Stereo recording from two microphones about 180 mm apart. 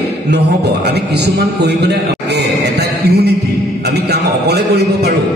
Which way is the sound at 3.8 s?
65° right (ahead or behind).